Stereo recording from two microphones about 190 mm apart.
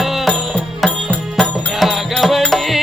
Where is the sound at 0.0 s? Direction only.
Centre (ahead or behind).